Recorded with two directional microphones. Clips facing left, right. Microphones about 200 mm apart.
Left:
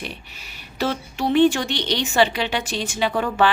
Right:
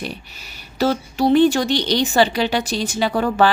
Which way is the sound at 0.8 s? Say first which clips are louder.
Right 6 dB; 40° right (ahead or behind).